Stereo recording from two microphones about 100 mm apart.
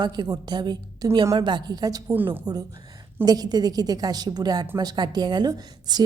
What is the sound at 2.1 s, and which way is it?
Speech, 20° right (ahead or behind).